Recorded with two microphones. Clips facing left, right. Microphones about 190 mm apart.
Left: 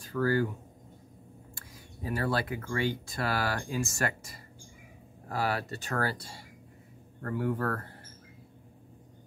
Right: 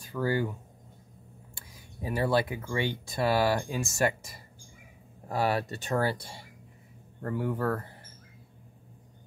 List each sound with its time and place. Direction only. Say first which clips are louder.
0.1 s speech: left 1 dB; 20° right (ahead or behind)
2.0 s speech: right 4 dB; 20° right (ahead or behind)